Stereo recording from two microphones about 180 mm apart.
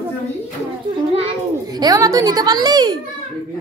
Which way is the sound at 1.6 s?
20° right (ahead or behind).